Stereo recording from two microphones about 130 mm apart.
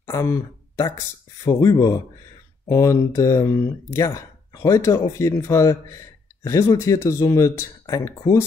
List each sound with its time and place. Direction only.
0.0 s speech: 20° left (ahead or behind)